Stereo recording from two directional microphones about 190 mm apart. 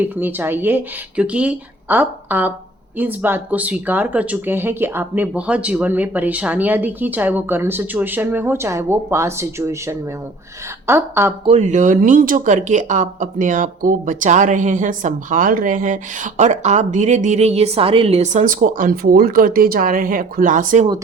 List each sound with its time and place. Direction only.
0.0 s speech: 10° right (ahead or behind)
11.4 s speech: 35° right (ahead or behind)